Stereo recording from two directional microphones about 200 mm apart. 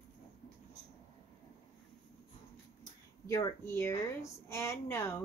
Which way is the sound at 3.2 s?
15° left (ahead or behind).